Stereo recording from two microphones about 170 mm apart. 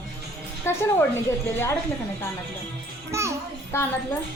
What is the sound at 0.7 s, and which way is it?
Speech, 15° left (ahead or behind).